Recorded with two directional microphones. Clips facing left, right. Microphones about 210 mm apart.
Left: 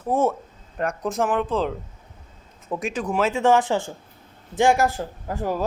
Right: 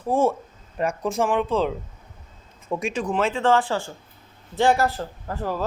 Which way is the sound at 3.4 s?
15° left (ahead or behind).